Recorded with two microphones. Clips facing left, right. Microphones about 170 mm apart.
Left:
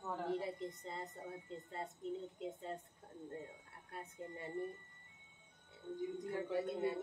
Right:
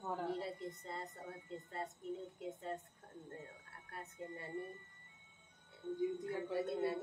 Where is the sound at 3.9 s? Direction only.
20° left (ahead or behind).